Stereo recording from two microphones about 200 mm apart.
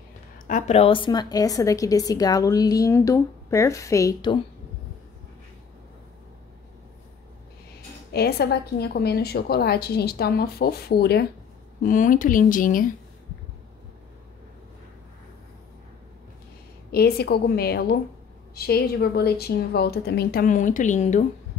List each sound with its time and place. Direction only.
0.5 s a woman's voice: 35° left (ahead or behind); by 4.4 s 20° left (ahead or behind)
8.1 s a woman's voice: 55° left (ahead or behind)
11.8 s a woman's voice: 40° left (ahead or behind)
16.9 s a woman's voice: 55° left (ahead or behind); by 21.3 s 35° left (ahead or behind)